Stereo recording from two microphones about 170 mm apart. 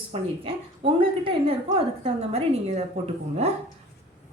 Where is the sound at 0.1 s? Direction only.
35° right (ahead or behind).